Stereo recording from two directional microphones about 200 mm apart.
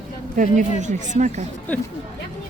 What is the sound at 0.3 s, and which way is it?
Speech, 40° right (ahead or behind).